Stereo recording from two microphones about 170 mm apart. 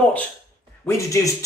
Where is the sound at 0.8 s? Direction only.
20° left (ahead or behind).